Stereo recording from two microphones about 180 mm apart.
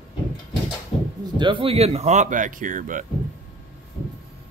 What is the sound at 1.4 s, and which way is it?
Speech, 30° right (ahead or behind).